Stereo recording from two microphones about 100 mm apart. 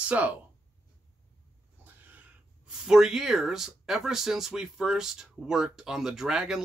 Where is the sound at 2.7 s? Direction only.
5° right (ahead or behind).